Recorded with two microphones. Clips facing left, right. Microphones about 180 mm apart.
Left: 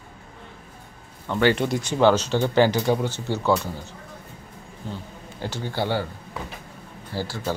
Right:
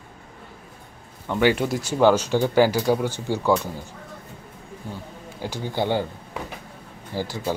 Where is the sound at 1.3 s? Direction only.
10° right (ahead or behind).